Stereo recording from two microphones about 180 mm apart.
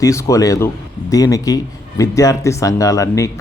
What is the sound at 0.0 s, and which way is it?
Speech, 15° left (ahead or behind).